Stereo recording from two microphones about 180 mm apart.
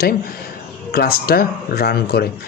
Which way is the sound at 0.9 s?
55° left (ahead or behind).